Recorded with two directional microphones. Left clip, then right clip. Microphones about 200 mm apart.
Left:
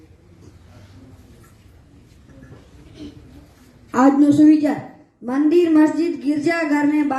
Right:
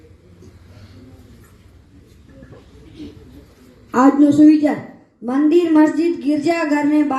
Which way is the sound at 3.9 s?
25° right (ahead or behind).